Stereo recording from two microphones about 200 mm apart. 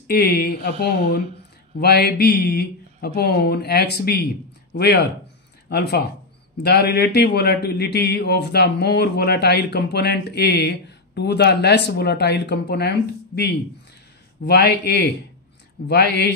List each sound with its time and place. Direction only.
0.0 s speech: 50° left (ahead or behind)
5.7 s a man's voice: 50° left (ahead or behind)